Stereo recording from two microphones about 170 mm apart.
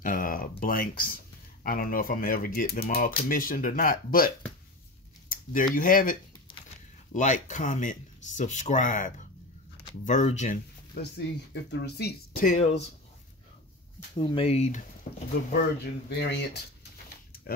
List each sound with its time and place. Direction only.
0.0 s speech: 55° left (ahead or behind)
5.3 s a sound: 55° left (ahead or behind)
5.8 s speech: 55° left (ahead or behind)
7.2 s speech: 45° left (ahead or behind)
11.0 s speech: 85° left
12.4 s speech: 40° left (ahead or behind)
14.1 s speech: 30° left (ahead or behind)
15.5 s speech: 75° left (ahead or behind)